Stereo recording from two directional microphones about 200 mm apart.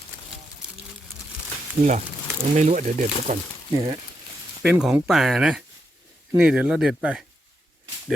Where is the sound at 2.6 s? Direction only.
35° right (ahead or behind).